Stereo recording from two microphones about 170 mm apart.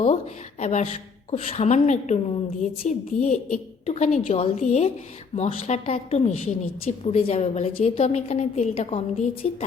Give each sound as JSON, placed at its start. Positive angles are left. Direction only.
{"t": 0.6, "sound": "a woman's voice", "side_deg": 40}